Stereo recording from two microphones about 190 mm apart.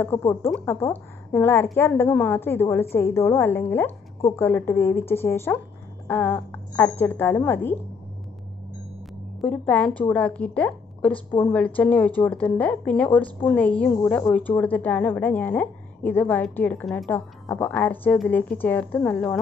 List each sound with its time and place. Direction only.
0.0 s a woman's voice: 15° left (ahead or behind)
9.4 s a woman's voice: 5° left (ahead or behind)